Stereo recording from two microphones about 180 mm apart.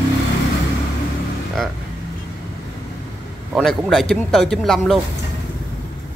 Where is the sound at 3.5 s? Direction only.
Centre (ahead or behind).